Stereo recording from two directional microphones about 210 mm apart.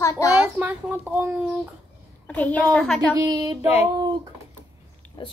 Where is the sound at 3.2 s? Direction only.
20° right (ahead or behind).